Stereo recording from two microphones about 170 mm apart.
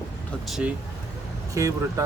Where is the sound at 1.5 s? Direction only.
20° right (ahead or behind).